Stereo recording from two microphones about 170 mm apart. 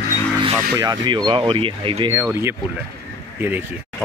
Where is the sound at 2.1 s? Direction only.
15° right (ahead or behind).